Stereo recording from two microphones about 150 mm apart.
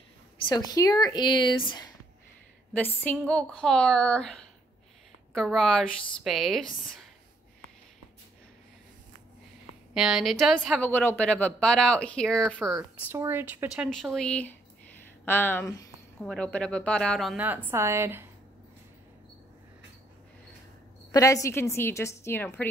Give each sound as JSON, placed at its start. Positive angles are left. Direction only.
{"t": 0.4, "sound": "speech", "side_deg": 30}
{"t": 2.7, "sound": "a woman's voice", "side_deg": 10}
{"t": 9.9, "sound": "a woman's voice", "side_deg": -5}
{"t": 10.8, "sound": "speech", "side_deg": 15}
{"t": 13.1, "sound": "a woman's voice", "side_deg": -15}
{"t": 13.8, "sound": "speech", "side_deg": 5}
{"t": 16.2, "sound": "a woman's voice", "side_deg": 5}
{"t": 17.4, "sound": "a woman's voice", "side_deg": -10}
{"t": 21.1, "sound": "speech", "side_deg": 20}